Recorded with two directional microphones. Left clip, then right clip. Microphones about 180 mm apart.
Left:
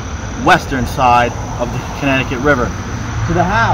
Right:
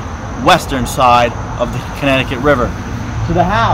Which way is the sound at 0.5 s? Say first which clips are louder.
Right 1 dB; 15° right (ahead or behind).